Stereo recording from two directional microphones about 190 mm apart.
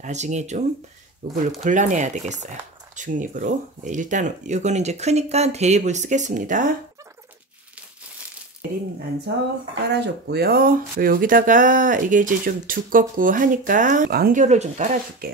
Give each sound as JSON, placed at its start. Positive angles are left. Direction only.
{"t": 0.0, "sound": "speech", "side_deg": -40}
{"t": 9.8, "sound": "speech", "side_deg": -65}
{"t": 15.2, "sound": "speech", "side_deg": -50}